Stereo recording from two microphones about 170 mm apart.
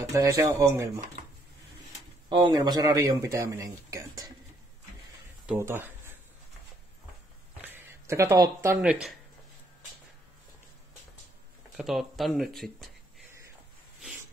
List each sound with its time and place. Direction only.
0.0 s speech: 20° right (ahead or behind)
2.2 s speech: 25° right (ahead or behind)
5.5 s speech: 15° right (ahead or behind)
7.6 s a sound: 10° right (ahead or behind)
8.7 s speech: 5° right (ahead or behind)
11.7 s speech: centre (ahead or behind)